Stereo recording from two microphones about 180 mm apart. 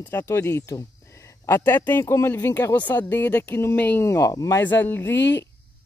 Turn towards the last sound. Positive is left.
turn(degrees=10)  # may be behind; listen again after turning